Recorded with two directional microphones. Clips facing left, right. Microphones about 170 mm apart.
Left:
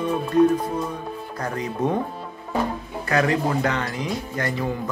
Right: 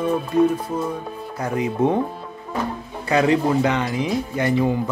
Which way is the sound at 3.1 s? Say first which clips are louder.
Right 4 dB; 15° right (ahead or behind).